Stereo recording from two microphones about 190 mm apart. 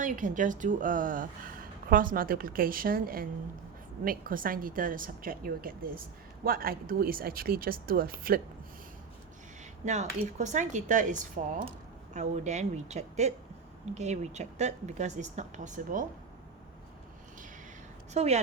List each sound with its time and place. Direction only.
0.0 s a woman's voice: 45° right (ahead or behind)
9.8 s speech: 40° right (ahead or behind)
18.1 s speech: 35° right (ahead or behind)